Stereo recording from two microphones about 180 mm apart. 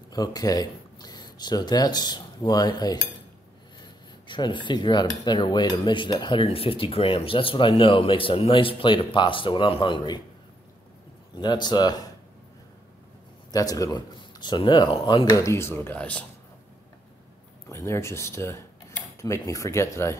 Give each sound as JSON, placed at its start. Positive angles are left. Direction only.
{"t": 0.1, "sound": "speech", "side_deg": 20}
{"t": 11.3, "sound": "speech", "side_deg": 25}
{"t": 13.5, "sound": "speech", "side_deg": 20}
{"t": 17.6, "sound": "cutlery", "side_deg": 15}
{"t": 19.2, "sound": "speech", "side_deg": 15}